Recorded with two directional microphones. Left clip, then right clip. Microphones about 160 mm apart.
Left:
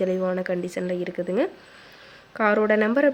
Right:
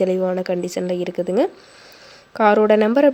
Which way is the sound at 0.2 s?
20° right (ahead or behind).